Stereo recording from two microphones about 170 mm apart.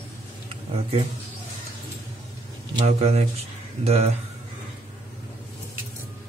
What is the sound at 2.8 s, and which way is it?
Speech, 35° right (ahead or behind).